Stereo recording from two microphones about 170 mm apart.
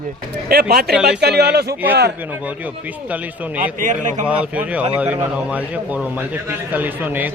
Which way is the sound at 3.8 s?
50° right (ahead or behind).